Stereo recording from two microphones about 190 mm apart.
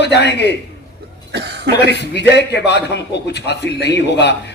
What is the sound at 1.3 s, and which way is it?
Cough, 60° right (ahead or behind).